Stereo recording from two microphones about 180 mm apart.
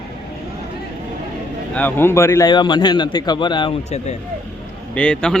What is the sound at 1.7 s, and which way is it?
A man's voice, 10° left (ahead or behind).